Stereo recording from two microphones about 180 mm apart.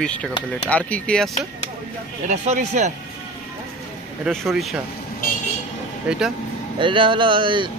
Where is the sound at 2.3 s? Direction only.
45° right (ahead or behind).